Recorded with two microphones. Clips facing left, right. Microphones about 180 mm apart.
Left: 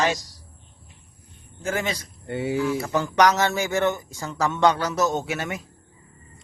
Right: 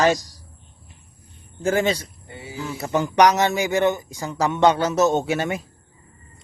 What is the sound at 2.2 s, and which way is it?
Speech, 70° left (ahead or behind).